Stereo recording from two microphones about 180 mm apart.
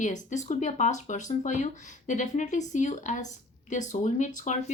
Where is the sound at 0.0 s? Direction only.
45° left (ahead or behind).